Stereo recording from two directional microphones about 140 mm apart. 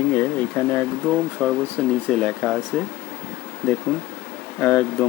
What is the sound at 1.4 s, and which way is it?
Speech, 10° right (ahead or behind).